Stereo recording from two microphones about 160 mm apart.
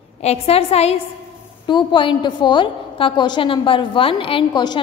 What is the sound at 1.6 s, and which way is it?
A woman's voice, 30° left (ahead or behind).